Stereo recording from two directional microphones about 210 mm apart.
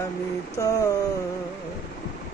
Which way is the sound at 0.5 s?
15° left (ahead or behind).